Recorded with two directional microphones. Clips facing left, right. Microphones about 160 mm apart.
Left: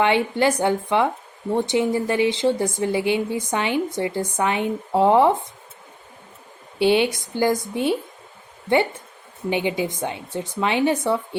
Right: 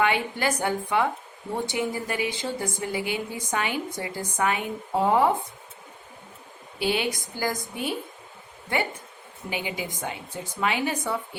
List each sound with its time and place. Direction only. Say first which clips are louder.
0.0 s speech: left 6 dB; 25° left (ahead or behind)
6.7 s speech: left 8 dB; 25° left (ahead or behind)
9.5 s speech: left 9 dB; 25° left (ahead or behind)